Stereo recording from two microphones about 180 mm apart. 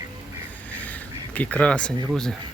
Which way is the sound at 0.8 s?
10° left (ahead or behind).